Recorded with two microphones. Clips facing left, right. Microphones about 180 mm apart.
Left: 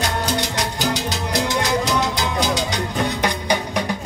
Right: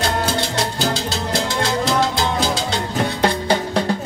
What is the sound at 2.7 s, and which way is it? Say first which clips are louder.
Music: right 1 dB; 15° left (ahead or behind).